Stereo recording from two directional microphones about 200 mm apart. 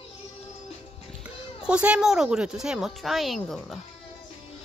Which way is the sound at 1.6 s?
5° right (ahead or behind).